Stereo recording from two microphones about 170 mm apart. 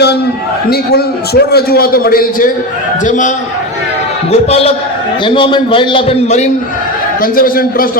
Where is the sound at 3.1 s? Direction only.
45° left (ahead or behind).